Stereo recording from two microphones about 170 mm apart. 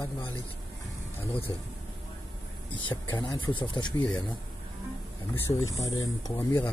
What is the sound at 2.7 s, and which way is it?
Speech, 30° left (ahead or behind).